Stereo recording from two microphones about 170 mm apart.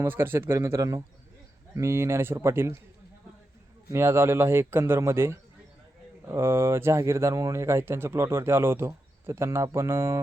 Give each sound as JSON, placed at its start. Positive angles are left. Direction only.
{"t": 0.0, "sound": "speech", "side_deg": -15}
{"t": 3.9, "sound": "speech", "side_deg": -15}